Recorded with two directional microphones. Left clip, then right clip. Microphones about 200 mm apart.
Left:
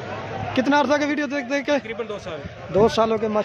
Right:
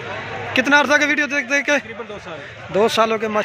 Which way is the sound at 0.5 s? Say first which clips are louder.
Right 5 dB; 10° left (ahead or behind).